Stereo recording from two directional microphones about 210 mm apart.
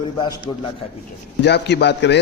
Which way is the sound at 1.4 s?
55° left (ahead or behind).